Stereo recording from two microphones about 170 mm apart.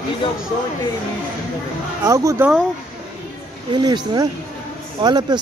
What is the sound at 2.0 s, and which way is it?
Speech, 20° right (ahead or behind).